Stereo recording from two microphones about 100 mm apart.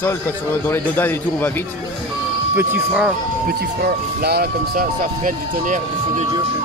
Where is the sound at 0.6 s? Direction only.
20° left (ahead or behind).